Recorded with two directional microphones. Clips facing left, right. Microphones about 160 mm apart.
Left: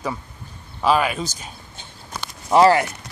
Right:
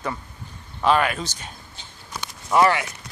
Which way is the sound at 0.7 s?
10° left (ahead or behind).